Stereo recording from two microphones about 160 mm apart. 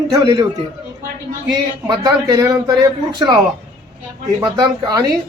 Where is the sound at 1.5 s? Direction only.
25° right (ahead or behind).